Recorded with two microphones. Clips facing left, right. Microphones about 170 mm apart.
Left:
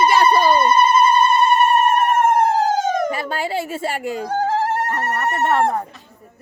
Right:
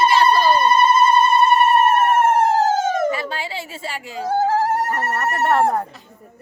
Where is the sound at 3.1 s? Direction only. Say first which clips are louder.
Left 3 dB; 50° left (ahead or behind).